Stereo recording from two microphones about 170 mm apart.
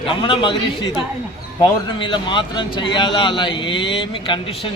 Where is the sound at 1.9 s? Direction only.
30° left (ahead or behind).